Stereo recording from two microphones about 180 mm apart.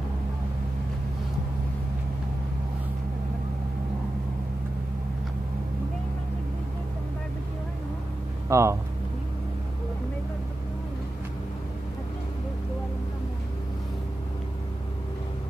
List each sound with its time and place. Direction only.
8.5 s speech: 15° right (ahead or behind)